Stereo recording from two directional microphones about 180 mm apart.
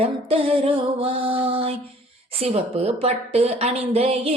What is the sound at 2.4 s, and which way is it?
A woman's voice, 35° right (ahead or behind).